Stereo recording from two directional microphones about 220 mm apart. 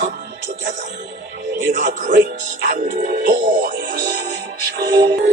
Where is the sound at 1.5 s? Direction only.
35° right (ahead or behind).